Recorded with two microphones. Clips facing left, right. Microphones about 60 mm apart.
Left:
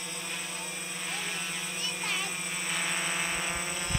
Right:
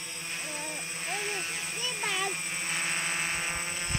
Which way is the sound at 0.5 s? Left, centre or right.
Right.